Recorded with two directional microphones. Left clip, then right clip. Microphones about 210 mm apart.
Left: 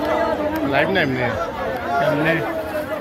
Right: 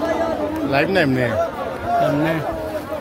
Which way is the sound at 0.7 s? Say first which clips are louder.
Right 2 dB; 55° right (ahead or behind).